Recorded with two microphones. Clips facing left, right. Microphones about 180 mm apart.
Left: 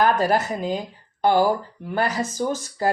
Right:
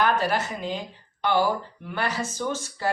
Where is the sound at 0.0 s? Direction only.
40° left (ahead or behind).